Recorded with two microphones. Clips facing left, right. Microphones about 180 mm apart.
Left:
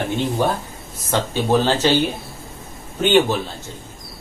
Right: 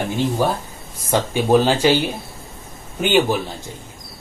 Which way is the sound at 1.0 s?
15° right (ahead or behind).